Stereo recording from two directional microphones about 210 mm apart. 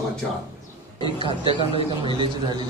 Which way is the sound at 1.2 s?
25° right (ahead or behind).